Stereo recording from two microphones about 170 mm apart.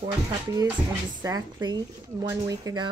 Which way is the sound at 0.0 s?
25° right (ahead or behind).